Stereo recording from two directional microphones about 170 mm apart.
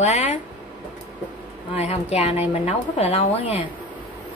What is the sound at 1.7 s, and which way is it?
A woman's voice, 40° left (ahead or behind).